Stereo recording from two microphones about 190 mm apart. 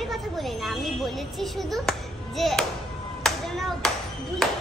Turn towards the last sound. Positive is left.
turn(degrees=0)  # may be behind; listen again after turning